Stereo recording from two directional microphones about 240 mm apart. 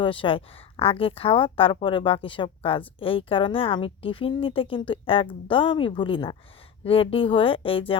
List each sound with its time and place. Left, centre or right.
0.0 s a woman's voice: left